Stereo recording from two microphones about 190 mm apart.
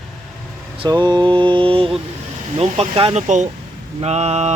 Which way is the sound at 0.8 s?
25° right (ahead or behind).